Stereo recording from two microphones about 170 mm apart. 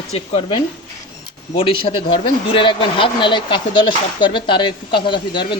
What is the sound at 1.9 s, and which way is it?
Speech, 30° left (ahead or behind).